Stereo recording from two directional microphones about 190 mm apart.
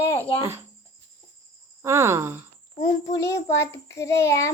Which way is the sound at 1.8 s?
15° right (ahead or behind).